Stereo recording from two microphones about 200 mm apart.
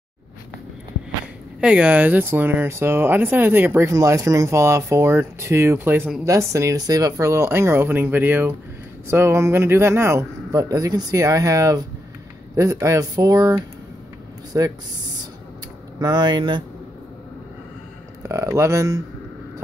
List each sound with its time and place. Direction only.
1.6 s speech: 5° right (ahead or behind)
16.0 s speech: 20° right (ahead or behind)
18.3 s speech: 15° right (ahead or behind)